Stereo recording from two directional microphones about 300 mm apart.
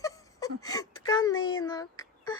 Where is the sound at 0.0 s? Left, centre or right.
Centre.